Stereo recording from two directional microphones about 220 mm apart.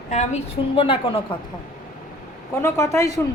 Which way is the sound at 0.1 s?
30° left (ahead or behind).